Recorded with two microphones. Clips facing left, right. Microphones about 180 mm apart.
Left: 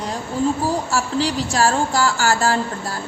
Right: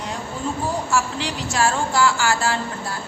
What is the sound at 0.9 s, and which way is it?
A woman's voice, 35° left (ahead or behind).